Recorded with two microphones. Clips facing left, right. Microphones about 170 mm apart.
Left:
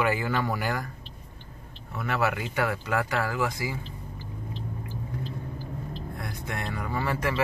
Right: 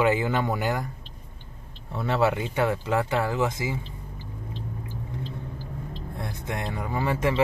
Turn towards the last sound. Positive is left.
turn(degrees=-20)  # may be behind; listen again after turning